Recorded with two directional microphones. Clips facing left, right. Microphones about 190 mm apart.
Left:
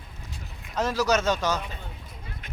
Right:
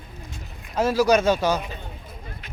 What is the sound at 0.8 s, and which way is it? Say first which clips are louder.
Speech: right 5 dB; 10° right (ahead or behind).